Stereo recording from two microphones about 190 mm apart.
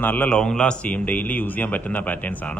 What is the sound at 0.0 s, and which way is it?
A man's voice, 10° left (ahead or behind).